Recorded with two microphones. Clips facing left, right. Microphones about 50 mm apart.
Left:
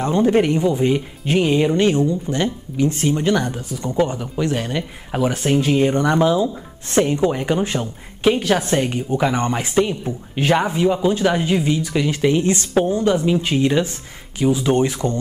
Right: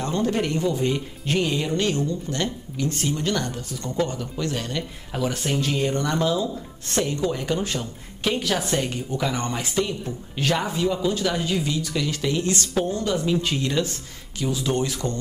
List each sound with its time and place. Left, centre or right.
0.0 s speech: left